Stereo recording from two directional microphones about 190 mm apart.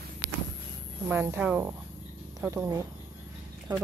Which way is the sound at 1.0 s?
10° right (ahead or behind).